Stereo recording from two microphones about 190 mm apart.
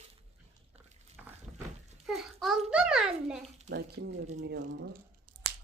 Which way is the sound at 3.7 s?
60° right (ahead or behind).